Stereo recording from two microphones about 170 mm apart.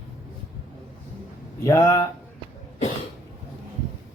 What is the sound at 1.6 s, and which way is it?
Speech, 15° left (ahead or behind).